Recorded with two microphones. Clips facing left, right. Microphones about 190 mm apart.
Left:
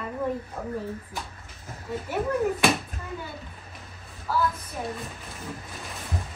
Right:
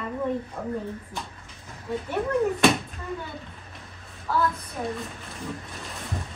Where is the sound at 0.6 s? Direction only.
Centre (ahead or behind).